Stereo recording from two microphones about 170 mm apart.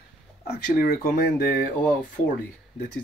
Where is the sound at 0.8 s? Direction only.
60° left (ahead or behind).